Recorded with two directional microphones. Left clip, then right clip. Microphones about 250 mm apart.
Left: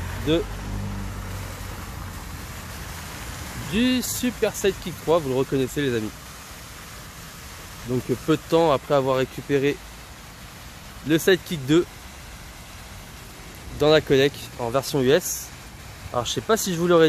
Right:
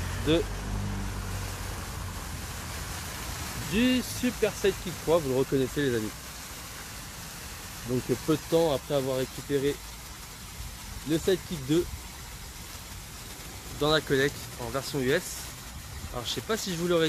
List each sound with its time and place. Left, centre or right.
3.7 s speech: centre
7.9 s speech: centre; by 9.8 s left
11.1 s speech: left
13.7 s speech: left